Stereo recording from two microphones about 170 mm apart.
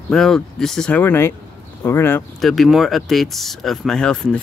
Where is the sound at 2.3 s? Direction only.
Centre (ahead or behind).